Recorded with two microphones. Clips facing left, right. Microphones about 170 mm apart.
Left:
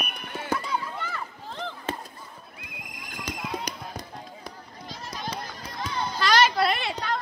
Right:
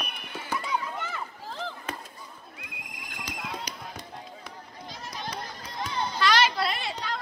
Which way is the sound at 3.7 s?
50° left (ahead or behind).